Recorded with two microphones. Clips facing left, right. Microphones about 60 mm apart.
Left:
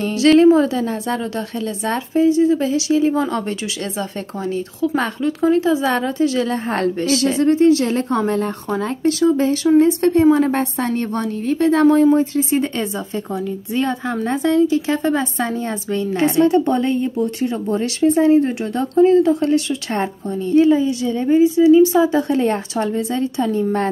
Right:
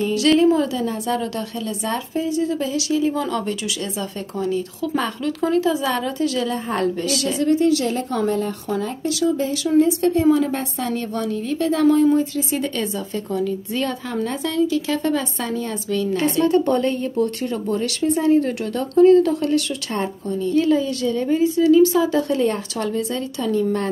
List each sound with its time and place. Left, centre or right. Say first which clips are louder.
0.1 s a woman's voice: left 6 dB; left
16.4 s speech: left 2 dB; left